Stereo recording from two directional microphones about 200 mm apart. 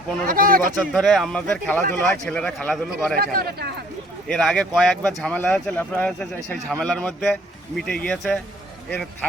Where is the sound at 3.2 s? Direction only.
50° right (ahead or behind).